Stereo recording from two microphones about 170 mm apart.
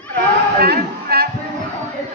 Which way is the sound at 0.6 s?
65° right (ahead or behind).